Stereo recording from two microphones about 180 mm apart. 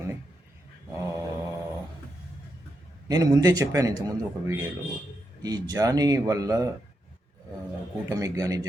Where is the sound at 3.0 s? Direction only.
20° right (ahead or behind).